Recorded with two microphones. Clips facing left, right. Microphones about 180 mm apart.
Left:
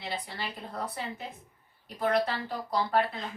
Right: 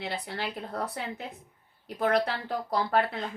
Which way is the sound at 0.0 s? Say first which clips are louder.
Right 3 dB; 65° right (ahead or behind).